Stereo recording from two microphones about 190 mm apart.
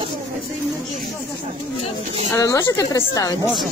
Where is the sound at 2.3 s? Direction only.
15° left (ahead or behind).